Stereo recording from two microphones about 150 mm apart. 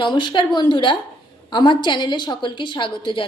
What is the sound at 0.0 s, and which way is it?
A woman's voice, 30° left (ahead or behind).